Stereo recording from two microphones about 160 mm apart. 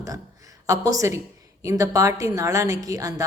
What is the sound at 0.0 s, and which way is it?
A woman's voice, 20° right (ahead or behind).